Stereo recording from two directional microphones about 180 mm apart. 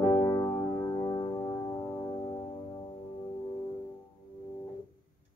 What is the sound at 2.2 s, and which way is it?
Music, 25° left (ahead or behind).